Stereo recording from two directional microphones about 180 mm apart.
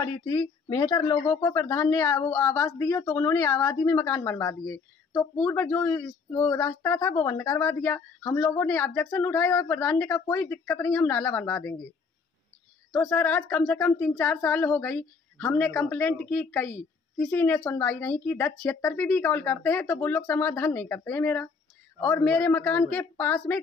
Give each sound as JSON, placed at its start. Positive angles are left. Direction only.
{"t": 0.3, "sound": "speech", "side_deg": 25}
{"t": 5.1, "sound": "speech", "side_deg": 10}
{"t": 12.9, "sound": "speech", "side_deg": 10}